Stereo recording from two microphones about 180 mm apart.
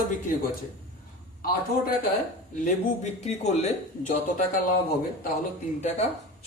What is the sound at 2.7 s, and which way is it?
A man's voice, 40° left (ahead or behind).